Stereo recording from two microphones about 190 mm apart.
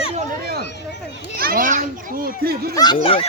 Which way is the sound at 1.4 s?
50° right (ahead or behind).